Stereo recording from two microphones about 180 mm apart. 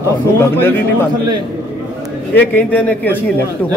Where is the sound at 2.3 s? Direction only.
10° left (ahead or behind).